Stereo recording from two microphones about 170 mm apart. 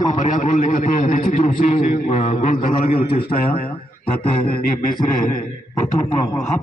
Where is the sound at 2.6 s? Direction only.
60° left (ahead or behind).